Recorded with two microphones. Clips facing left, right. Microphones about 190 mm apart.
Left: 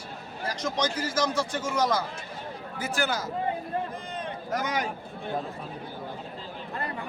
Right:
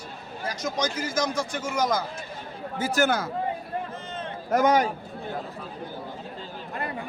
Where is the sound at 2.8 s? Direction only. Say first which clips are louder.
Right 6 dB; 40° right (ahead or behind).